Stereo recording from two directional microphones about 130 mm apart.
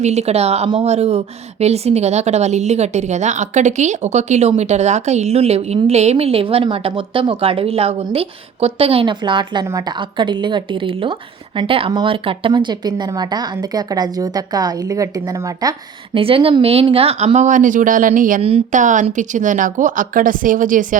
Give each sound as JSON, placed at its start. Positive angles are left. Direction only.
{"t": 0.0, "sound": "a woman's voice", "side_deg": -55}
{"t": 16.1, "sound": "a woman's voice", "side_deg": -45}
{"t": 18.7, "sound": "speech", "side_deg": -75}